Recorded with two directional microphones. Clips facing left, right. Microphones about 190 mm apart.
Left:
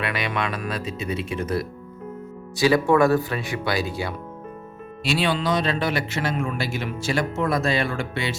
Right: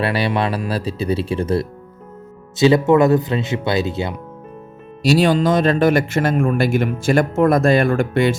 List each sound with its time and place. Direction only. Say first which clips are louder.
0.0 s speech: right 7 dB; 35° right (ahead or behind)
5.0 s speech: right 8 dB; 40° right (ahead or behind)